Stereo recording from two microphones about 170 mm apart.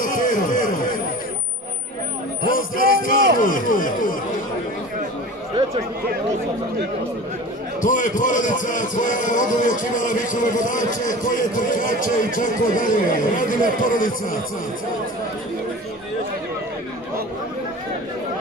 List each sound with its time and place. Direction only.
0.0 s a sound: 50° left (ahead or behind)
2.4 s music: 55° left (ahead or behind)
2.8 s music: 70° right (ahead or behind)
3.3 s speech: 50° left (ahead or behind)
7.8 s speech: 50° left (ahead or behind)